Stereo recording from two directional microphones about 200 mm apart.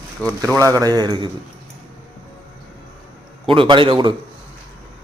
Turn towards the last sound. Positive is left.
turn(degrees=-25)  # may be behind; listen again after turning